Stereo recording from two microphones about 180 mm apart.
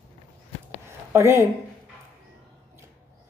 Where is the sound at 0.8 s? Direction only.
15° right (ahead or behind).